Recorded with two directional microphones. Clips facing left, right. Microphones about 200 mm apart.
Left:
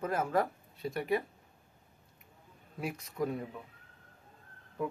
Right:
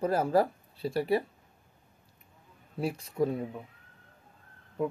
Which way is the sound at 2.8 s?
30° right (ahead or behind).